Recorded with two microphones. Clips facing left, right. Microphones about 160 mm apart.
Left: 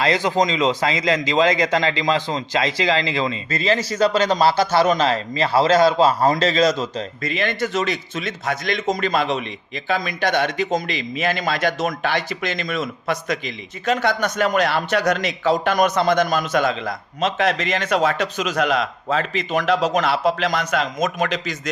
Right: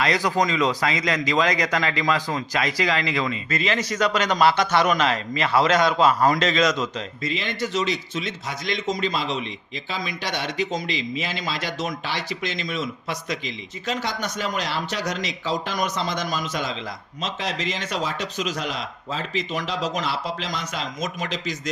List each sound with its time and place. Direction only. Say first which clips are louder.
0.0 s a man's voice: left 3 dB; 25° left (ahead or behind)
7.2 s a man's voice: left 4 dB; 55° left (ahead or behind)